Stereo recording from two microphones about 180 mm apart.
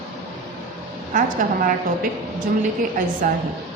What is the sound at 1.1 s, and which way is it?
Speech, 50° right (ahead or behind).